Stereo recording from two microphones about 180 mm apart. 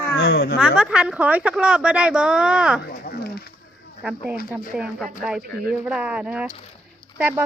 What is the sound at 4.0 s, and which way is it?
Speech, 5° right (ahead or behind).